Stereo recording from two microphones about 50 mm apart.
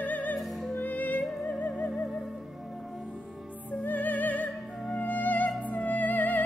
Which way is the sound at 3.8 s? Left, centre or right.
Left.